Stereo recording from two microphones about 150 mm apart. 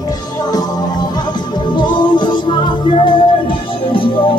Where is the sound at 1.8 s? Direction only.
30° left (ahead or behind).